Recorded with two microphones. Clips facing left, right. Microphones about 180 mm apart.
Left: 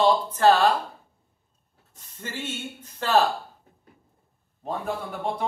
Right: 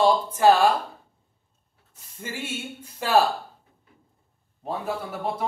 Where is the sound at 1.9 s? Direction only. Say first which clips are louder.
Even; 10° right (ahead or behind).